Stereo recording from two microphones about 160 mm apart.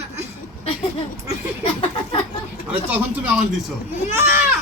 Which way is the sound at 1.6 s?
35° left (ahead or behind).